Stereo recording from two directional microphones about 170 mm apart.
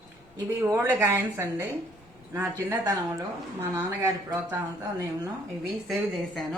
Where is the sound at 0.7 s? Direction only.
20° right (ahead or behind).